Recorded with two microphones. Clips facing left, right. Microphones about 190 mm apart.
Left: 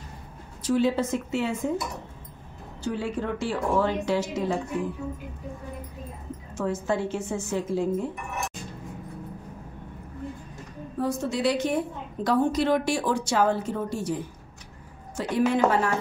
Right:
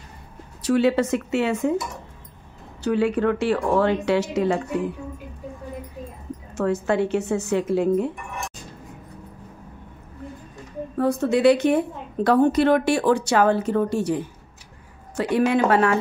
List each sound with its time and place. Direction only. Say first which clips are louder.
0.6 s speech: right 4 dB; 70° right (ahead or behind)
2.8 s speech: right 8 dB; 70° right (ahead or behind)
6.5 s speech: right 5 dB; 70° right (ahead or behind)
11.0 s a woman's voice: right 7 dB; 60° right (ahead or behind)